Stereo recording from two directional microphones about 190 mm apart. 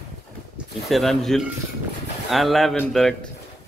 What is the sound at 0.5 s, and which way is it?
Speech, centre (ahead or behind).